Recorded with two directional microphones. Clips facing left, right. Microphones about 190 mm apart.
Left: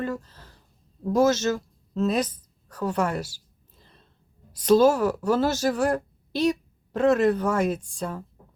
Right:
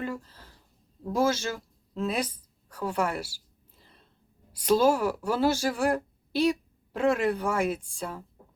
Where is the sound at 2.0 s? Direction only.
10° right (ahead or behind).